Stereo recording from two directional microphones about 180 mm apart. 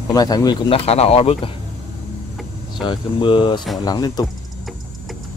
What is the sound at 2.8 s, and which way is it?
Speech, 25° left (ahead or behind).